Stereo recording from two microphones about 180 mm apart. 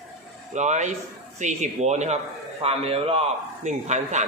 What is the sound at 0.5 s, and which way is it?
Speech, 40° right (ahead or behind).